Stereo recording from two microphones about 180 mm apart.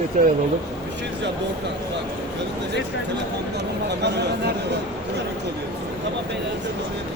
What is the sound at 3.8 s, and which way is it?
Speech, 70° right (ahead or behind).